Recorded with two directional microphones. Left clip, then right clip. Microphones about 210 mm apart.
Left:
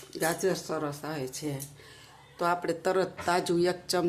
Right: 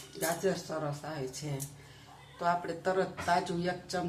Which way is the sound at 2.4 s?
50° left (ahead or behind).